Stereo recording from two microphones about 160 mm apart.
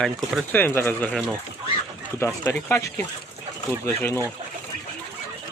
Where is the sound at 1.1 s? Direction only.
Centre (ahead or behind).